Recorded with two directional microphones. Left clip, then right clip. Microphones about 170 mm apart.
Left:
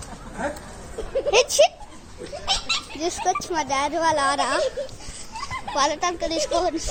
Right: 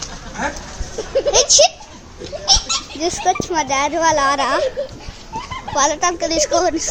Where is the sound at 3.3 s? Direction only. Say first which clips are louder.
Right 6 dB; centre (ahead or behind).